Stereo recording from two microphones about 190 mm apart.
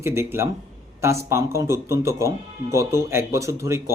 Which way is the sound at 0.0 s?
15° right (ahead or behind).